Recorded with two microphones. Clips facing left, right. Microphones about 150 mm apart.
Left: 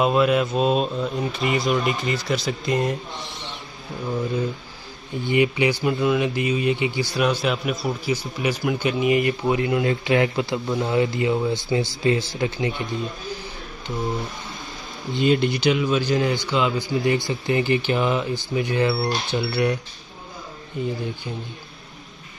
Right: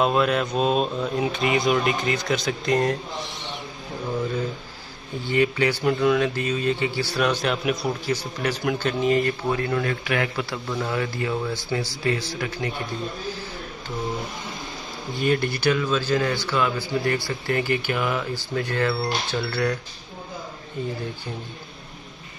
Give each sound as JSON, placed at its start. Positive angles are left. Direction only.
{"t": 0.0, "sound": "speech", "side_deg": 5}
{"t": 5.2, "sound": "a man's voice", "side_deg": 15}
{"t": 15.1, "sound": "a man's voice", "side_deg": 20}